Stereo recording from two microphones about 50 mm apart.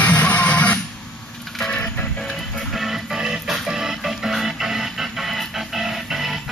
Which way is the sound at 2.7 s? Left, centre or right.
Centre.